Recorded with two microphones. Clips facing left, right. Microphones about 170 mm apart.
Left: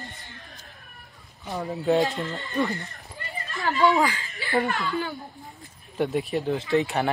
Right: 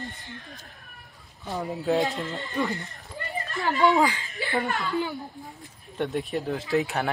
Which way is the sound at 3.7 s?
20° right (ahead or behind).